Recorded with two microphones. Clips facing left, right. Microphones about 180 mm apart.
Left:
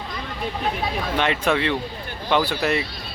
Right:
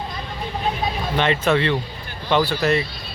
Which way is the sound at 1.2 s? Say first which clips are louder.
Right 3 dB; 5° left (ahead or behind).